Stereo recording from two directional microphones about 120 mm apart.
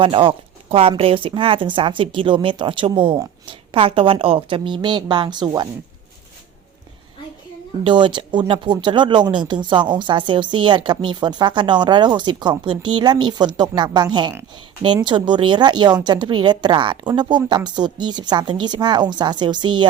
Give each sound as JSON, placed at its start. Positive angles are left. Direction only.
{"t": 0.0, "sound": "a woman's voice", "side_deg": -50}
{"t": 7.9, "sound": "speech", "side_deg": -40}